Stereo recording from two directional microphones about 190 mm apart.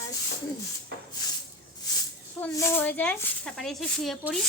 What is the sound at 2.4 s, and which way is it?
Speech, 15° left (ahead or behind).